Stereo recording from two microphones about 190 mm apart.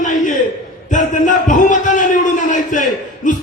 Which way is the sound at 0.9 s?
40° left (ahead or behind).